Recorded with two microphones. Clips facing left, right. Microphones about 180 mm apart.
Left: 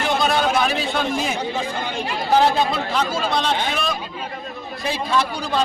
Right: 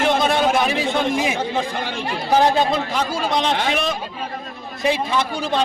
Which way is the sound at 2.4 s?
15° right (ahead or behind).